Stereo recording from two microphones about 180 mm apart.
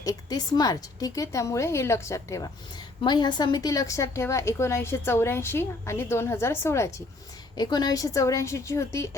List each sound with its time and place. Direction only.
0.0 s a woman's voice: 20° left (ahead or behind)